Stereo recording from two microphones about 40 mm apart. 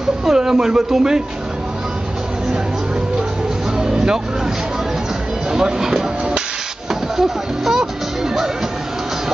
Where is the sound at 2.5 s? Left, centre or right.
Centre.